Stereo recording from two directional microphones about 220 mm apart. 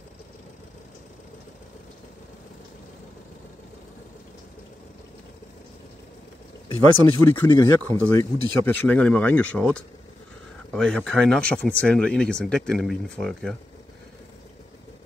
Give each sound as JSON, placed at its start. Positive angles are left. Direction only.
{"t": 6.7, "sound": "speech", "side_deg": 20}
{"t": 7.2, "sound": "speech", "side_deg": 10}